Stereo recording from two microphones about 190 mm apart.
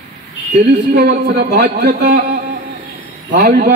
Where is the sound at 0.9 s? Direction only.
55° right (ahead or behind).